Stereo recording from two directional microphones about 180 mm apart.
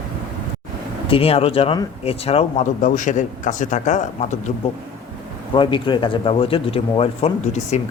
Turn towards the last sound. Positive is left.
turn(degrees=35)  # may be behind; listen again after turning